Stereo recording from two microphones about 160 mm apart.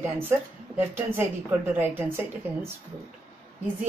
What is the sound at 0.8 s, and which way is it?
Speech, 15° right (ahead or behind).